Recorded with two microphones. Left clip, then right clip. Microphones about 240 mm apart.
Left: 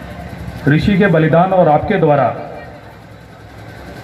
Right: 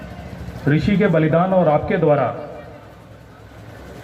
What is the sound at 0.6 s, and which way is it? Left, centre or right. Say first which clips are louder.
A man's voice: left 5 dB; left.